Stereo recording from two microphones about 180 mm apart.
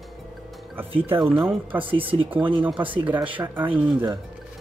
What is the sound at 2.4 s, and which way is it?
Speech, 30° right (ahead or behind).